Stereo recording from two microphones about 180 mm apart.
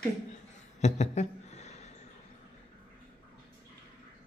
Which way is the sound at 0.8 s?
40° left (ahead or behind).